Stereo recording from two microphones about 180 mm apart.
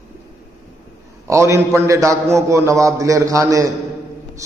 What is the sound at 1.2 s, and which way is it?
A man's voice, 15° right (ahead or behind).